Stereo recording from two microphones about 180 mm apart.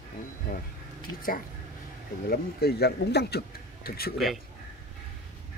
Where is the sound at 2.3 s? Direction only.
60° left (ahead or behind).